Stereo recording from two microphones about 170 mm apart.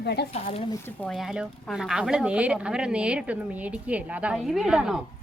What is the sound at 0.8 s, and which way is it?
Speech, 5° left (ahead or behind).